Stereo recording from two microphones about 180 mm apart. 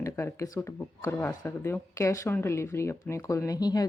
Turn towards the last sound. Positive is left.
turn(degrees=20)  # may be behind; listen again after turning